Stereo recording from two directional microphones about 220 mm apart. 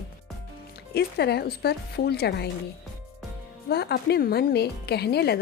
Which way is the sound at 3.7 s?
45° left (ahead or behind).